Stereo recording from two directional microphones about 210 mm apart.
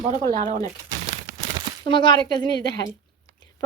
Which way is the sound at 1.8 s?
20° left (ahead or behind).